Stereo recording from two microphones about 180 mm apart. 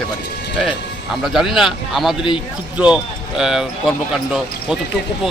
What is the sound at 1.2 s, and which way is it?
Speech, centre (ahead or behind).